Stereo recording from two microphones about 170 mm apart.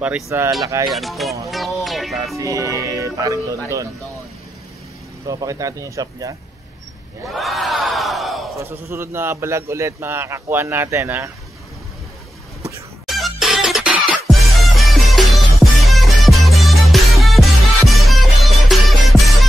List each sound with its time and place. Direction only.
0.0 s a man's voice: 10° right (ahead or behind)
0.8 s speech: centre (ahead or behind)
1.5 s music: centre (ahead or behind)
2.3 s music: 20° right (ahead or behind)
5.2 s speech: 20° right (ahead or behind)
7.2 s crowd: centre (ahead or behind)
8.5 s a man's voice: 15° right (ahead or behind)
13.0 s music: centre (ahead or behind)